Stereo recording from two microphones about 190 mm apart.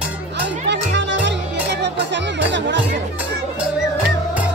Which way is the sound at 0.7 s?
70° right (ahead or behind).